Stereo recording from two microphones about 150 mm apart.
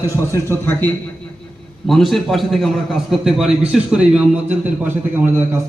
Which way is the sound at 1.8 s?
Centre (ahead or behind).